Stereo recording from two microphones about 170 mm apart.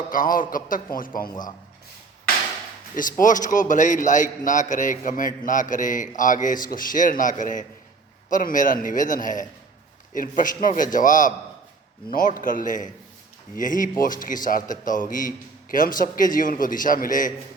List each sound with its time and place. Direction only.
0.1 s a man's voice: 55° left (ahead or behind)
1.3 s speech: 25° left (ahead or behind)
2.9 s a man's voice: 50° left (ahead or behind)